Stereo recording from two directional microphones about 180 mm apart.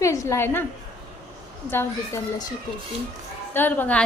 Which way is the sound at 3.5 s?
10° left (ahead or behind).